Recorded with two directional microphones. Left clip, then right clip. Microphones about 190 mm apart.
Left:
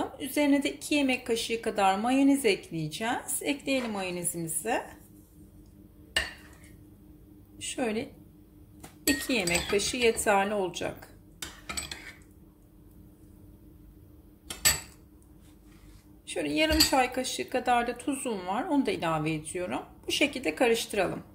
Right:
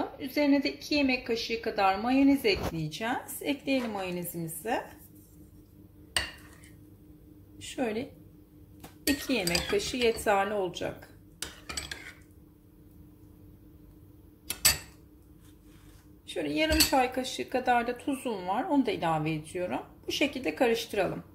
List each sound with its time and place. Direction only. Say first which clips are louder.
0.0 s a woman's voice: left 1 dB; 10° left (ahead or behind)
7.5 s a woman's voice: left 1 dB; centre (ahead or behind)
9.2 s speech: left 1 dB; centre (ahead or behind)
16.3 s speech: left 1 dB; centre (ahead or behind)